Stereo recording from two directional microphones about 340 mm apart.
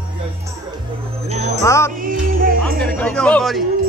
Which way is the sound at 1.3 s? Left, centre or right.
Centre.